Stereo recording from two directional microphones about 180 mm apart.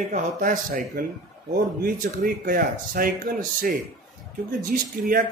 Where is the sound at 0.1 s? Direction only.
50° right (ahead or behind).